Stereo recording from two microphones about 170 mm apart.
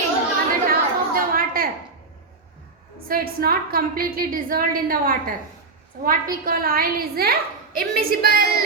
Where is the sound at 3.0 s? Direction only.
60° right (ahead or behind).